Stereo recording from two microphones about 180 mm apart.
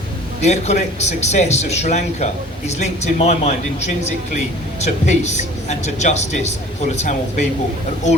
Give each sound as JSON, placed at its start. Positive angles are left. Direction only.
{"t": 0.4, "sound": "speech", "side_deg": 40}